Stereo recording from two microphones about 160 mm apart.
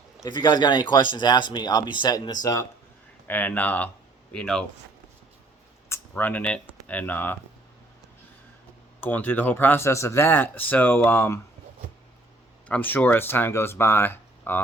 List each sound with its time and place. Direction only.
0.3 s speech: 25° left (ahead or behind)
3.2 s speech: 10° left (ahead or behind)
5.9 s speech: 10° left (ahead or behind)
9.0 s speech: 10° left (ahead or behind)
12.6 s speech: 10° left (ahead or behind)